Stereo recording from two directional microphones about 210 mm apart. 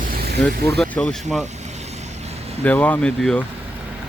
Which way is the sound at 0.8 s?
5° left (ahead or behind).